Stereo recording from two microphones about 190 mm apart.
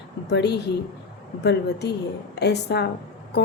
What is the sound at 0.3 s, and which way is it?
Music, 60° left (ahead or behind).